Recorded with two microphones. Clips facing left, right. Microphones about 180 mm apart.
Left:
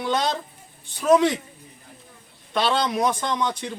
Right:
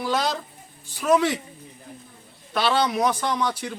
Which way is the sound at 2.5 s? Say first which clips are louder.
Even; 5° right (ahead or behind).